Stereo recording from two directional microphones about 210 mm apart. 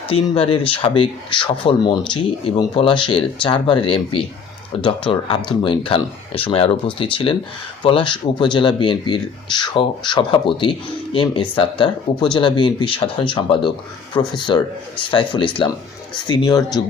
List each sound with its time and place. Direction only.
0.1 s speech: 25° left (ahead or behind)